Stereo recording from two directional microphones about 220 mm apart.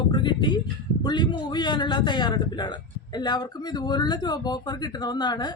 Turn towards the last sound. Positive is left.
turn(degrees=20)  # may be behind; listen again after turning